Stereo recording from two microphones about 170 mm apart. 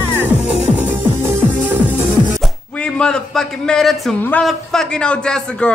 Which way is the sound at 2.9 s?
5° left (ahead or behind).